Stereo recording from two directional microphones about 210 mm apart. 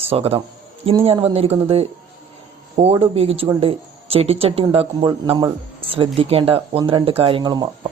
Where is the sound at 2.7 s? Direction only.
30° right (ahead or behind).